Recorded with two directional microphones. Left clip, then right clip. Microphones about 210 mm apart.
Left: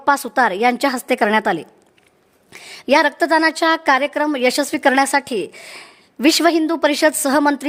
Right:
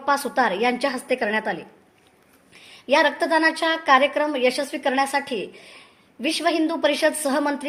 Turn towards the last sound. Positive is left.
turn(degrees=60)  # may be behind; listen again after turning